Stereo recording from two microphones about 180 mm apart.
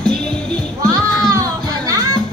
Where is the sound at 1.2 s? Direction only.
20° right (ahead or behind).